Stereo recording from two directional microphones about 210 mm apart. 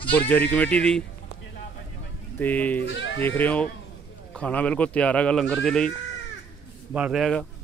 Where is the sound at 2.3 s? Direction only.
10° left (ahead or behind).